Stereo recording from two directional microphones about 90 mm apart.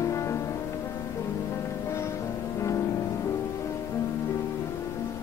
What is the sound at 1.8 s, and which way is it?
Music, 35° left (ahead or behind).